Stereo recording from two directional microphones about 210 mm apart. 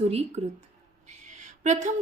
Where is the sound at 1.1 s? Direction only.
35° right (ahead or behind).